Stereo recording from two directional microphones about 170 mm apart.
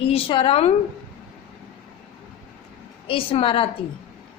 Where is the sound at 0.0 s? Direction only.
35° left (ahead or behind).